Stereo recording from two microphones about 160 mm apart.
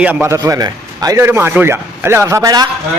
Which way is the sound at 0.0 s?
10° right (ahead or behind).